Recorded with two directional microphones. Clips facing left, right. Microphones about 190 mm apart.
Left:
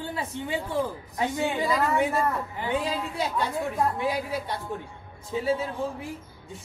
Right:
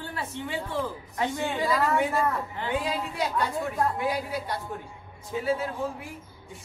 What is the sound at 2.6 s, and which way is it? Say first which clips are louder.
Speech: left 1 dB; 25° left (ahead or behind).